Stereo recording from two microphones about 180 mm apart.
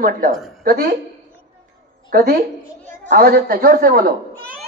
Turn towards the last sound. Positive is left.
turn(degrees=-55)  # may be behind; listen again after turning